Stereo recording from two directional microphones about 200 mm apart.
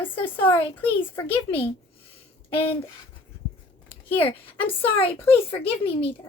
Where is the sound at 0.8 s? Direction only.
10° left (ahead or behind).